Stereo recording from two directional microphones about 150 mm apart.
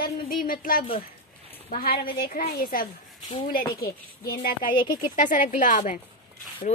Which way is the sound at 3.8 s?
90° left.